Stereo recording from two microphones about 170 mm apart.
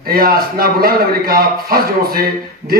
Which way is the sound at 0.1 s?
60° right (ahead or behind).